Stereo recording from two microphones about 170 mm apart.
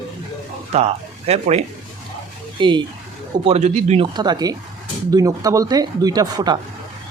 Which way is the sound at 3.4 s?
40° right (ahead or behind).